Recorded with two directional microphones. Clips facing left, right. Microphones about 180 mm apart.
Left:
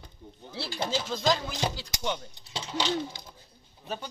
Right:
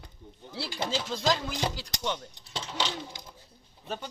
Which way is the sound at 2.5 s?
Centre (ahead or behind).